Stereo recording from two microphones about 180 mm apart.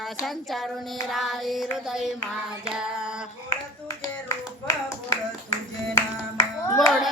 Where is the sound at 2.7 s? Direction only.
5° right (ahead or behind).